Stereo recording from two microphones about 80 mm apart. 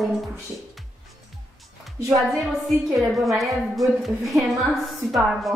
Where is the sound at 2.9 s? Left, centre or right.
Centre.